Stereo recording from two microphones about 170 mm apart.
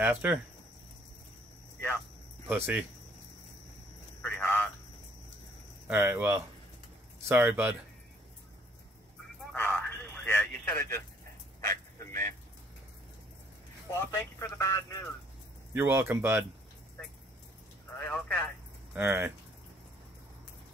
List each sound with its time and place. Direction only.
0.0 s speech: 10° right (ahead or behind)
2.4 s speech: 10° right (ahead or behind)
4.2 s telephone: 10° left (ahead or behind)
5.9 s speech: 10° right (ahead or behind)
9.5 s a sound: 10° left (ahead or behind)
11.6 s bow-wow: 15° left (ahead or behind)
14.4 s speech: 15° left (ahead or behind)
15.7 s speech: 10° right (ahead or behind)
17.9 s a man's voice: 5° left (ahead or behind)
18.9 s speech: 10° right (ahead or behind)